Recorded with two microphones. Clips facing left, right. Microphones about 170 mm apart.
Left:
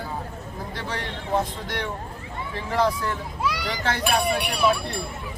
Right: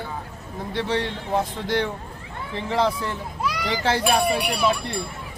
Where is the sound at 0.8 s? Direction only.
30° right (ahead or behind).